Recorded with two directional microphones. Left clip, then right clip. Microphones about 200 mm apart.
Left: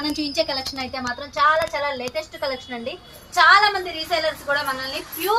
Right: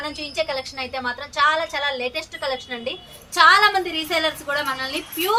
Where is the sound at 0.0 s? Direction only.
25° right (ahead or behind).